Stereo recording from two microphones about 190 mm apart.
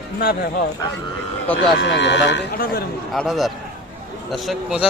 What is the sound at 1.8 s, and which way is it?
Speech, 65° left (ahead or behind).